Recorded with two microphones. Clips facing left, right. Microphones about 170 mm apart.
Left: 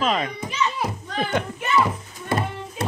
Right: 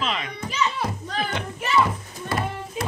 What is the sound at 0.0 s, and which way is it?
Speech, 45° left (ahead or behind).